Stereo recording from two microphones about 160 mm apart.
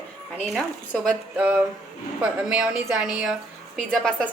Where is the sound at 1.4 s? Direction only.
10° right (ahead or behind).